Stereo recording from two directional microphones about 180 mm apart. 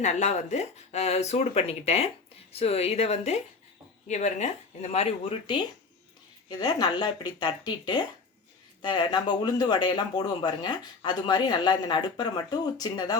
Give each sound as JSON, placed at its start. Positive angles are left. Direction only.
{"t": 0.0, "sound": "speech", "side_deg": 40}